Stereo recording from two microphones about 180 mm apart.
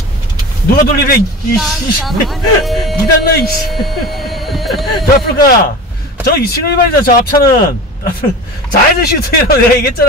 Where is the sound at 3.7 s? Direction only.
Centre (ahead or behind).